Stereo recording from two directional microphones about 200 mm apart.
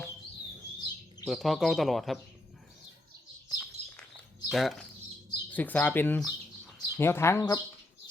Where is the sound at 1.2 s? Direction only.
Centre (ahead or behind).